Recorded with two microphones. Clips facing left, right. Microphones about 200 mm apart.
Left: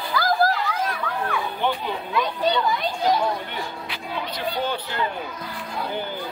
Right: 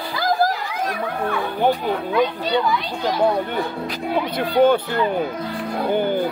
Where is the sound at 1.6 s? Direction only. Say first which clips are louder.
Right 10 dB; 40° right (ahead or behind).